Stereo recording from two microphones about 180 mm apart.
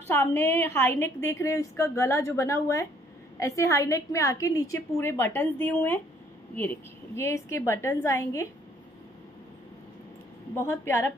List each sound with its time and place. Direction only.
0.1 s a woman's voice: 15° left (ahead or behind)
10.5 s a woman's voice: 10° left (ahead or behind)